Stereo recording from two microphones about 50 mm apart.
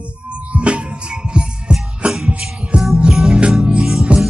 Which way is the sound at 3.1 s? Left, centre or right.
Centre.